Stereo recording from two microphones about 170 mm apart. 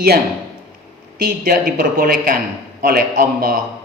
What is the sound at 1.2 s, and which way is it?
A man's voice, 60° right (ahead or behind).